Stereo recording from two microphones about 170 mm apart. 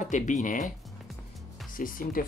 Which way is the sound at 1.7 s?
55° left (ahead or behind).